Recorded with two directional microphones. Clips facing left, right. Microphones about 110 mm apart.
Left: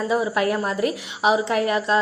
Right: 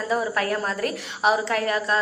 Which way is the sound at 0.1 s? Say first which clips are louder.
Left 2 dB; 15° left (ahead or behind).